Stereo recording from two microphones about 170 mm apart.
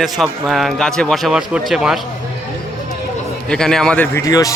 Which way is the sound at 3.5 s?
5° left (ahead or behind).